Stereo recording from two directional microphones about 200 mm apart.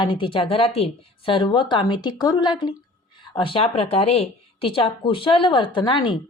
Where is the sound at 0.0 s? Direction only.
25° left (ahead or behind).